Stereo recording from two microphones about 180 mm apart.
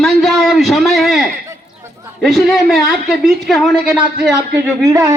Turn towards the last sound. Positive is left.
turn(degrees=-20)  # may be behind; listen again after turning